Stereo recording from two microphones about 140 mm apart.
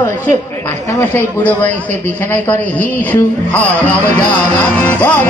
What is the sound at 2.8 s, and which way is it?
A man's voice, 10° left (ahead or behind).